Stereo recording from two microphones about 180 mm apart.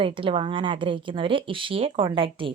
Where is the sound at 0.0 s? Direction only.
30° right (ahead or behind).